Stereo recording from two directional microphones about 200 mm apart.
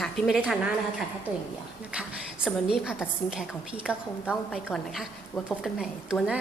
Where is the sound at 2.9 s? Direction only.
5° right (ahead or behind).